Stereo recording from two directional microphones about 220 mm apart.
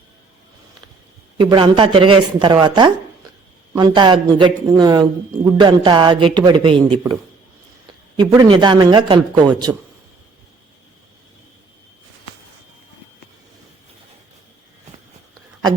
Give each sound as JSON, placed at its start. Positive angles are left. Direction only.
{"t": 1.4, "sound": "speech", "side_deg": -20}
{"t": 8.1, "sound": "speech", "side_deg": -20}